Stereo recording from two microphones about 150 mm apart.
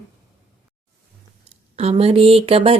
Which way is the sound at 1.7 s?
45° right (ahead or behind).